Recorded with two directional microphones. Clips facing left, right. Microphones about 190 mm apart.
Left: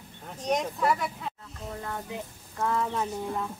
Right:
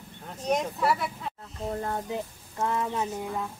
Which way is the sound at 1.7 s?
40° right (ahead or behind).